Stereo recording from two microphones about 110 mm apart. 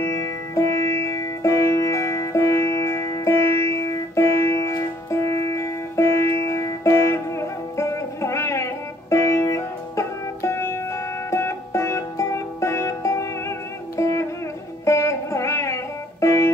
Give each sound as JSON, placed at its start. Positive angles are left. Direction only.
{"t": 0.6, "sound": "music", "side_deg": 25}